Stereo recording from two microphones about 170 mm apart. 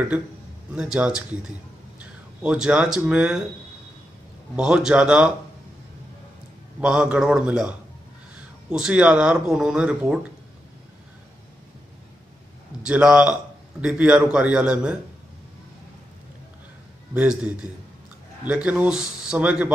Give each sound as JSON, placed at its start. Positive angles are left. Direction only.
{"t": 0.7, "sound": "speech", "side_deg": -5}
{"t": 4.6, "sound": "speech", "side_deg": -5}
{"t": 6.8, "sound": "speech", "side_deg": -5}
{"t": 12.8, "sound": "a man's voice", "side_deg": -5}
{"t": 17.1, "sound": "a man's voice", "side_deg": -5}
{"t": 18.5, "sound": "a man's voice", "side_deg": -10}